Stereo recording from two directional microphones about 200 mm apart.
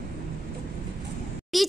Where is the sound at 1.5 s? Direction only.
Centre (ahead or behind).